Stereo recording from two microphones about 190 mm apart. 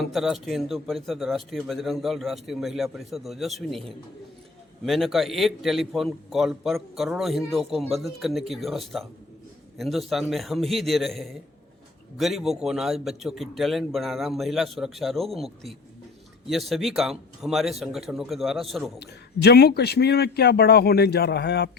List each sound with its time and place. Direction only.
0.0 s a man's voice: centre (ahead or behind)
18.9 s a man's voice: 60° left (ahead or behind)